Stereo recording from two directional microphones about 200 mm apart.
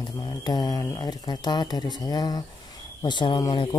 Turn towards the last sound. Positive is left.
turn(degrees=20)  # may be behind; listen again after turning